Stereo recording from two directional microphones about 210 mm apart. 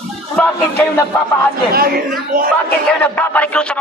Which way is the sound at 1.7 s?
45° right (ahead or behind).